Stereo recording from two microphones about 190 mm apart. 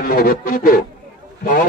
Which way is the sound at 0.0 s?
50° left (ahead or behind).